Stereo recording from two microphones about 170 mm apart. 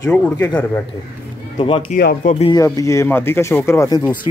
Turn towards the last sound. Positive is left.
turn(degrees=20)  # may be behind; listen again after turning